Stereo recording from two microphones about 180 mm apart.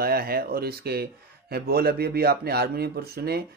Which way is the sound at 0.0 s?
55° right (ahead or behind).